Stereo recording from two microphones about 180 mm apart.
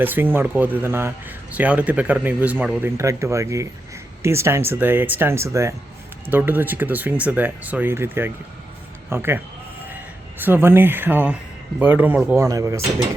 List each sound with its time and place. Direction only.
0.0 s speech: 10° right (ahead or behind)